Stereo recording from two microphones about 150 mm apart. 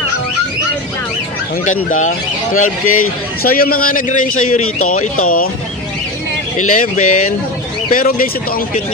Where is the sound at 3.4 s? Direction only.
75° left (ahead or behind).